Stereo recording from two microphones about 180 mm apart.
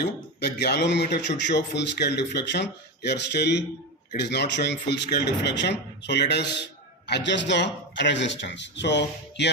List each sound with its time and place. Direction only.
0.0 s speech: 65° left (ahead or behind)